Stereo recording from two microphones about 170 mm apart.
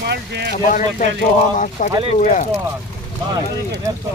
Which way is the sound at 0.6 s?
50° left (ahead or behind).